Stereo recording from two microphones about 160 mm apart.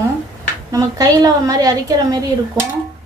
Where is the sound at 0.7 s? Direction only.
25° right (ahead or behind).